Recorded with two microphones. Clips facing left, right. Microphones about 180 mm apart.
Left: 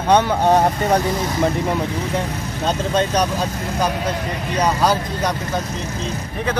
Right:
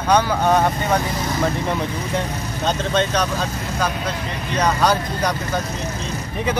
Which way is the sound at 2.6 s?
10° left (ahead or behind).